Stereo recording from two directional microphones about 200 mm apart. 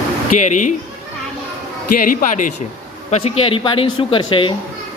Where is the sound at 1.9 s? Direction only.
45° left (ahead or behind).